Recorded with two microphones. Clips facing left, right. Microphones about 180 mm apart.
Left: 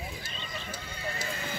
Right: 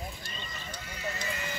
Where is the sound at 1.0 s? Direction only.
30° left (ahead or behind).